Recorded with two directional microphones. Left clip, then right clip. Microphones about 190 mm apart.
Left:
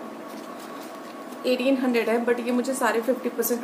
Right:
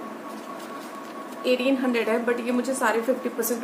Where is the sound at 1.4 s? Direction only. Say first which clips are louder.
Even; 5° right (ahead or behind).